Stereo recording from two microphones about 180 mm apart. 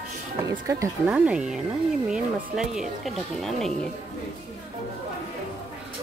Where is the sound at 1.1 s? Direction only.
5° right (ahead or behind).